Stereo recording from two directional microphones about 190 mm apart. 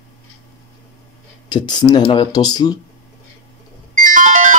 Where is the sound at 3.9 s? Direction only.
45° right (ahead or behind).